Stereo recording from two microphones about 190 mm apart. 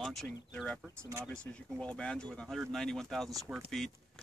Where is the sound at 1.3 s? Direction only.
5° left (ahead or behind).